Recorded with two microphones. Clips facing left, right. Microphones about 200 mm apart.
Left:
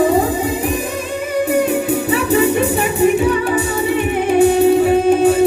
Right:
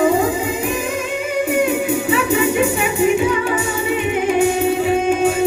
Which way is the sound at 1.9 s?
35° left (ahead or behind).